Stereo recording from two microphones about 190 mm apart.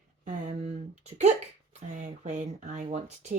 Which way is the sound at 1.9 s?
40° right (ahead or behind).